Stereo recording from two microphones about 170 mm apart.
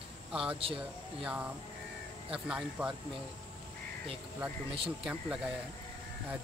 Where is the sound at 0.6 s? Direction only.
35° right (ahead or behind).